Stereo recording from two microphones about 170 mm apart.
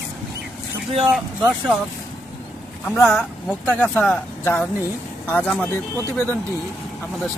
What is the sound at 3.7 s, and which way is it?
Speech, 10° left (ahead or behind).